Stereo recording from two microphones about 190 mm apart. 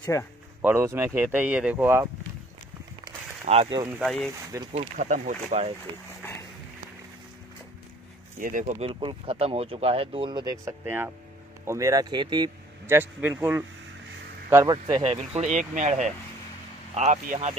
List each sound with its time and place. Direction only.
0.0 s speech: 15° left (ahead or behind)
0.6 s speech: 10° right (ahead or behind)
3.4 s speech: 30° right (ahead or behind)
4.0 s speech: centre (ahead or behind)
4.5 s speech: 15° right (ahead or behind)
4.9 s speech: 45° right (ahead or behind)
8.4 s speech: 45° right (ahead or behind)
8.8 s speech: 30° right (ahead or behind)
15.1 s speech: 35° right (ahead or behind)